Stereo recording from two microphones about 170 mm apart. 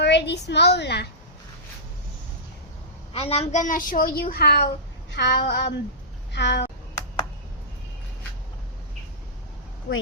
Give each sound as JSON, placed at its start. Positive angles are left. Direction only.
{"t": 0.0, "sound": "a woman's voice", "side_deg": 90}
{"t": 3.1, "sound": "a woman's voice", "side_deg": 35}